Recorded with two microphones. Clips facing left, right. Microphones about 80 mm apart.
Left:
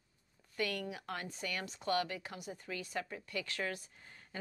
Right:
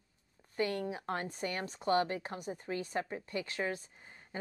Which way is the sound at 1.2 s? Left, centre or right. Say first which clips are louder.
Right 5 dB; right.